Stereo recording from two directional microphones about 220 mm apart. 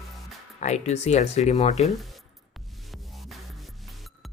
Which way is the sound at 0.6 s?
30° left (ahead or behind).